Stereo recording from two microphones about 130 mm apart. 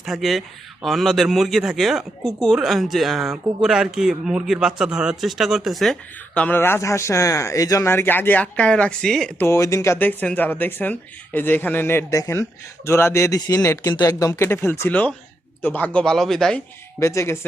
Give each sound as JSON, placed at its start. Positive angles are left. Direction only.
{"t": 0.0, "sound": "a man's voice", "side_deg": 0}
{"t": 9.4, "sound": "a man's voice", "side_deg": 20}
{"t": 17.0, "sound": "speech", "side_deg": 20}